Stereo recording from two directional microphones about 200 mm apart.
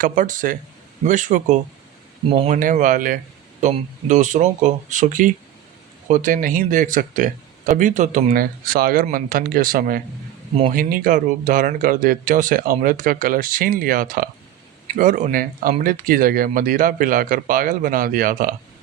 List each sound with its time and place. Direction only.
0.0 s speech: 40° right (ahead or behind)
2.3 s speech: 30° right (ahead or behind)
2.6 s speech: 40° right (ahead or behind)